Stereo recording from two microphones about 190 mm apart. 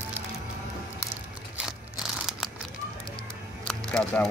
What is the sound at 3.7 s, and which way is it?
Music, 5° left (ahead or behind).